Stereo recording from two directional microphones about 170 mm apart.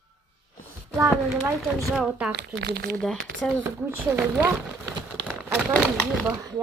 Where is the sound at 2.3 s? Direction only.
80° right.